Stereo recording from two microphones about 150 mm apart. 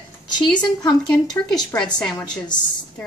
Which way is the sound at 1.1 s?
5° left (ahead or behind).